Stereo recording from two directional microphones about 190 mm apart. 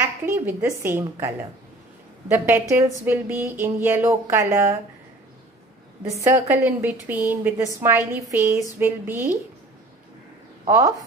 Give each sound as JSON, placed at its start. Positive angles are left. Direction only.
{"t": 0.0, "sound": "a woman's voice", "side_deg": -10}
{"t": 2.3, "sound": "a woman's voice", "side_deg": -10}
{"t": 6.0, "sound": "a woman's voice", "side_deg": -15}
{"t": 10.7, "sound": "a woman's voice", "side_deg": -15}